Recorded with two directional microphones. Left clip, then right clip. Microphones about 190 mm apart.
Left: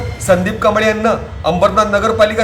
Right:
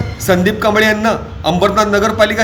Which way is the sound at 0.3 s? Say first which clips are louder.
Even; 15° right (ahead or behind).